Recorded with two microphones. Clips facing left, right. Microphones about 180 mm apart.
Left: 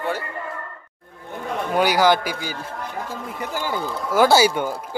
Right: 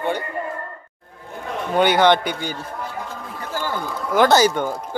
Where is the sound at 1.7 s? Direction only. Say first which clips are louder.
Right 2 dB; centre (ahead or behind).